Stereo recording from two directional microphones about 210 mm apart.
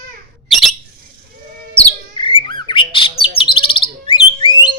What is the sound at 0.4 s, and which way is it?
Bird, centre (ahead or behind).